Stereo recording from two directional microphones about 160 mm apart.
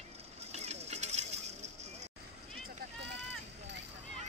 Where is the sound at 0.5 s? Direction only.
40° right (ahead or behind).